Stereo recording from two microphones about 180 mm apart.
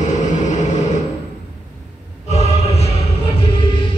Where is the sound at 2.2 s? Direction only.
35° left (ahead or behind).